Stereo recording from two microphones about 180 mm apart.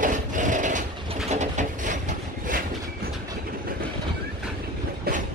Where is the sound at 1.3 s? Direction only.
40° right (ahead or behind).